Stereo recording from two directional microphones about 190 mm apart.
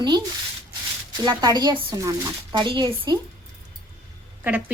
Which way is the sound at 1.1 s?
20° right (ahead or behind).